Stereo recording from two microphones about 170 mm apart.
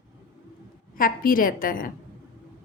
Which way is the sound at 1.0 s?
55° left (ahead or behind).